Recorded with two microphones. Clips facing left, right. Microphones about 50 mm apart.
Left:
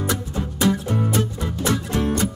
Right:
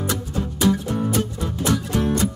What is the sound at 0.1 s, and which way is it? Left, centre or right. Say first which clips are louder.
Music: even; left.